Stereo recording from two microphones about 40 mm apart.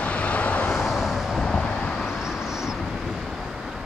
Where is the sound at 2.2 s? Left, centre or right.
Centre.